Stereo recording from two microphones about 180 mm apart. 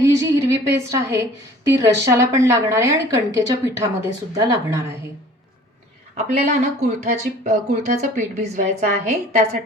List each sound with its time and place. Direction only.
0.0 s a woman's voice: 15° right (ahead or behind)
6.1 s speech: 35° right (ahead or behind)